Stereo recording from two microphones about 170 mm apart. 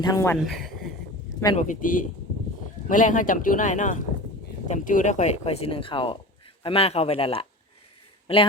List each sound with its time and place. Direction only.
0.0 s speech: 20° left (ahead or behind)
0.3 s speech: centre (ahead or behind)
1.5 s speech: 50° left (ahead or behind); by 7.4 s 35° left (ahead or behind)